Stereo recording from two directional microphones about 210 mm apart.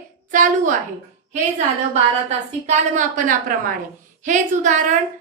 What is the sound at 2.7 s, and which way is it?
A woman's voice, 35° right (ahead or behind).